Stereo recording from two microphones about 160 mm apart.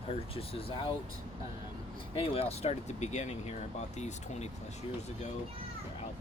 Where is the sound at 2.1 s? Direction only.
35° left (ahead or behind).